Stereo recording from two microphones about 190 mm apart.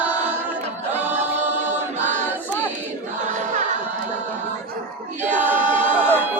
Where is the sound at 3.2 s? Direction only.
40° right (ahead or behind).